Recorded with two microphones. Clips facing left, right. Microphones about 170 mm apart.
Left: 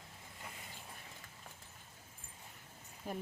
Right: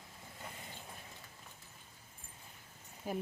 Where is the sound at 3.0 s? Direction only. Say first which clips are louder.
Right 4 dB; 5° right (ahead or behind).